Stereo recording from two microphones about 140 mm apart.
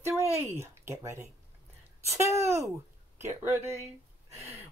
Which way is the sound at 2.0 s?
20° right (ahead or behind).